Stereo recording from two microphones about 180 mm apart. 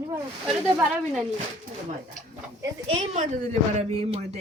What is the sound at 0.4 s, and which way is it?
Speech, centre (ahead or behind).